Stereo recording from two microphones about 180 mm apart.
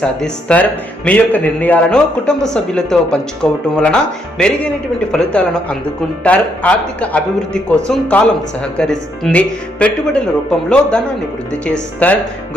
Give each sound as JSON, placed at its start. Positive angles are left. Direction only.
{"t": 0.0, "sound": "a man's voice", "side_deg": 5}